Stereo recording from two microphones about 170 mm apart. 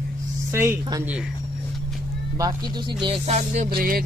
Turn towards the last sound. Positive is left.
turn(degrees=-60)  # may be behind; listen again after turning